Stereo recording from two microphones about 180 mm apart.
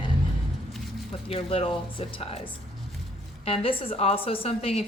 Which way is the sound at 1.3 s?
30° left (ahead or behind).